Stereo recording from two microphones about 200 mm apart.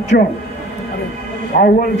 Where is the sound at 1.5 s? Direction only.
45° left (ahead or behind).